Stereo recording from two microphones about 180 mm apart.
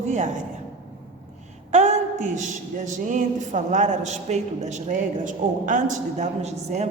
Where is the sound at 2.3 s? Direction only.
45° right (ahead or behind).